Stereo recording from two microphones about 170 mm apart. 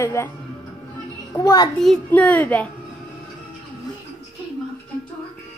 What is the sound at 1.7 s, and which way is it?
Speech, 5° left (ahead or behind).